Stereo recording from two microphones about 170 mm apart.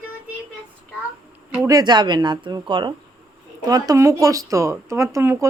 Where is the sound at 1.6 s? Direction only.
25° right (ahead or behind).